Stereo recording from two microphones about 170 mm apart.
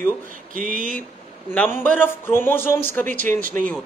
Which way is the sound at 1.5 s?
10° left (ahead or behind).